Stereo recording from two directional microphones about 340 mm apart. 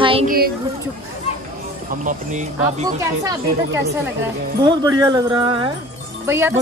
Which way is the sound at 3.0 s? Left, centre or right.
Centre.